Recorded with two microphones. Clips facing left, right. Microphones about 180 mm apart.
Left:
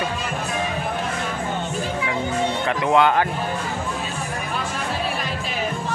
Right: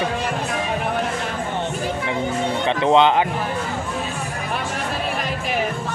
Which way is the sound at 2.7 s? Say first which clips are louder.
Right 3 dB; 25° right (ahead or behind).